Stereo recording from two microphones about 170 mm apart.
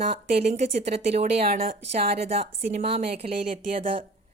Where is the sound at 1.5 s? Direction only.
55° right (ahead or behind).